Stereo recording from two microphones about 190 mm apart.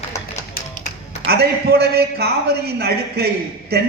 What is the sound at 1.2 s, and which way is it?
A man's voice, 55° right (ahead or behind).